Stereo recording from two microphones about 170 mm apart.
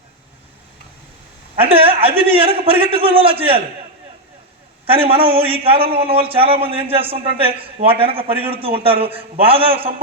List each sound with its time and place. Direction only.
1.6 s a man's voice: 35° right (ahead or behind)
4.9 s a man's voice: 35° right (ahead or behind)